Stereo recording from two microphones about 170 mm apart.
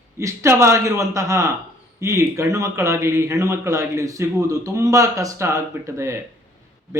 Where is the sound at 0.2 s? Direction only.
15° right (ahead or behind).